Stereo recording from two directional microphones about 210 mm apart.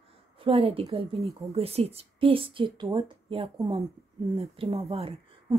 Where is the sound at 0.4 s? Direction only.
25° right (ahead or behind).